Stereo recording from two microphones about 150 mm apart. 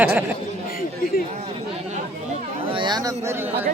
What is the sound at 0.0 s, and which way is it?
Speech, 10° right (ahead or behind).